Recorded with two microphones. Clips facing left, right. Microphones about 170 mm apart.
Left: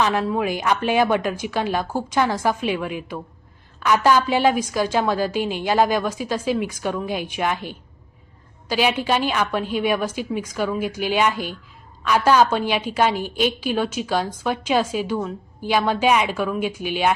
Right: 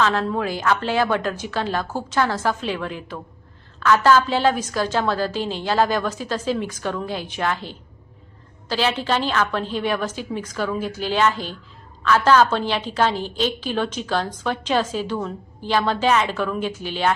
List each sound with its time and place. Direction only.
0.0 s a woman's voice: 15° left (ahead or behind)